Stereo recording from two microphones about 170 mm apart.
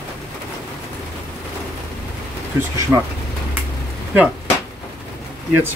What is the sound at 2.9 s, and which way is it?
Speech, 10° right (ahead or behind).